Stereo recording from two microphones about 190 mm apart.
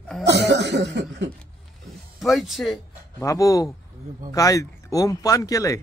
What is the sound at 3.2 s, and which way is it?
Speech, 15° left (ahead or behind).